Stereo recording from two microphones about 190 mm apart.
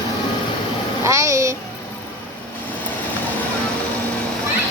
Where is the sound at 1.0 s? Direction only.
15° right (ahead or behind).